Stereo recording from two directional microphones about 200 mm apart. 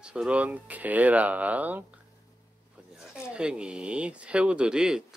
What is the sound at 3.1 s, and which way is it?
Speech, 5° right (ahead or behind).